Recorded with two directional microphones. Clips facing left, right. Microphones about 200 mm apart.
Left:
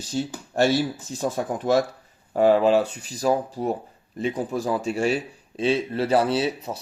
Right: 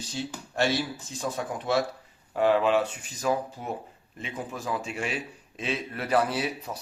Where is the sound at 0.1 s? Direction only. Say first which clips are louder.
Left 8 dB; 45° left (ahead or behind).